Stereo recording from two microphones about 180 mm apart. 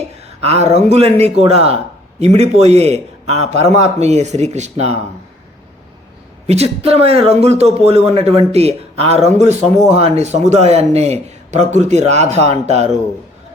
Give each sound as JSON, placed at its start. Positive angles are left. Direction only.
{"t": 0.3, "sound": "a man's voice", "side_deg": -35}
{"t": 6.5, "sound": "a man's voice", "side_deg": -35}